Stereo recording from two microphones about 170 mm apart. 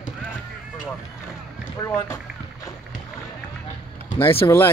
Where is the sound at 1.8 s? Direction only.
15° left (ahead or behind).